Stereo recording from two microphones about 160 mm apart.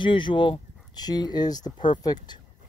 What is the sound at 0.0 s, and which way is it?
Speech, 30° left (ahead or behind).